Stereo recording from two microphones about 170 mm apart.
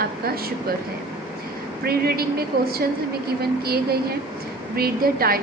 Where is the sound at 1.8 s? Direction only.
65° right (ahead or behind).